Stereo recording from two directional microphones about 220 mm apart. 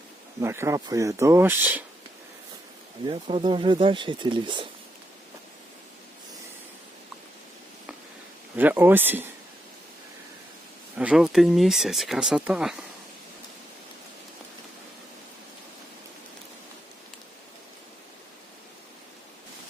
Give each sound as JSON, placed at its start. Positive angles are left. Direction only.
{"t": 0.3, "sound": "speech", "side_deg": -10}
{"t": 3.1, "sound": "speech", "side_deg": -25}
{"t": 8.5, "sound": "speech", "side_deg": -10}
{"t": 10.9, "sound": "speech", "side_deg": -5}